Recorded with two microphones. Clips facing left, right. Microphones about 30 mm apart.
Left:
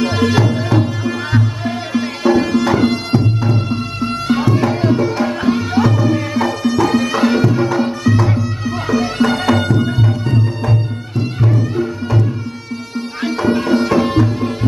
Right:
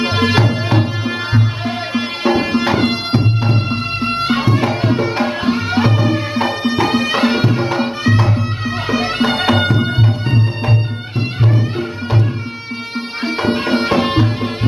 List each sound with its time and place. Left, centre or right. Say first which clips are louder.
0.0 s music: even; right